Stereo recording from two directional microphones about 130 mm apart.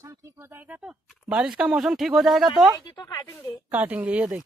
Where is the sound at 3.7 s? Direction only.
10° right (ahead or behind).